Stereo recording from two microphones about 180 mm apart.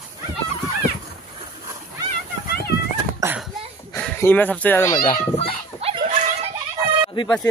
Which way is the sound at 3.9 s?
10° left (ahead or behind).